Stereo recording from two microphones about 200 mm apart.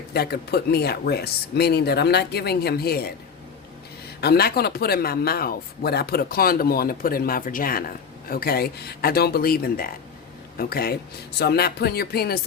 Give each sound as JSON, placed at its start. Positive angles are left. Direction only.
{"t": 0.1, "sound": "speech", "side_deg": 50}
{"t": 4.2, "sound": "speech", "side_deg": 50}